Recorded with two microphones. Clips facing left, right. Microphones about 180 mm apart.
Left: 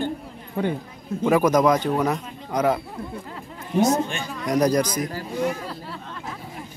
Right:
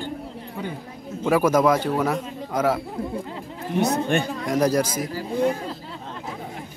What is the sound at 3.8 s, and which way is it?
Speech, 60° right (ahead or behind).